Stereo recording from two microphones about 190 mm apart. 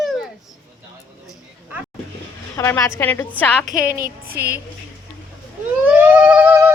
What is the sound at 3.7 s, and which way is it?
Speech, 50° right (ahead or behind).